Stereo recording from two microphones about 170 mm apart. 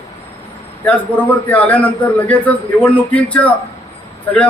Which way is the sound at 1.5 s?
10° left (ahead or behind).